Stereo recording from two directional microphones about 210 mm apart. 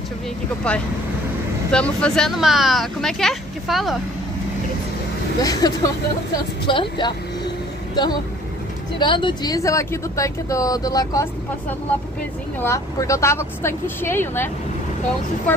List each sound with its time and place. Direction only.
0.7 s speech: 5° left (ahead or behind)
5.4 s a woman's voice: 15° left (ahead or behind)
12.5 s speech: 15° left (ahead or behind)